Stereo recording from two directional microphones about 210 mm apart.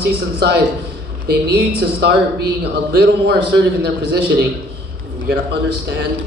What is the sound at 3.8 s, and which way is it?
Speech, 50° right (ahead or behind).